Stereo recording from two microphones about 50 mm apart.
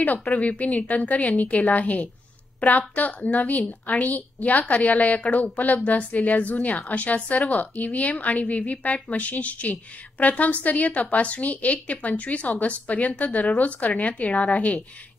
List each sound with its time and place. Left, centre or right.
0.0 s a woman's voice: left